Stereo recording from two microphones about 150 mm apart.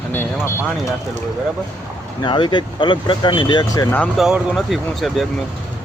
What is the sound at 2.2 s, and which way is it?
Speech, 30° left (ahead or behind).